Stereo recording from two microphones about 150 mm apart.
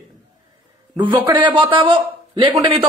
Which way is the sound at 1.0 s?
30° right (ahead or behind).